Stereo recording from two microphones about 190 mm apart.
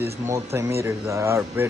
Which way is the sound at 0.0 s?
15° right (ahead or behind).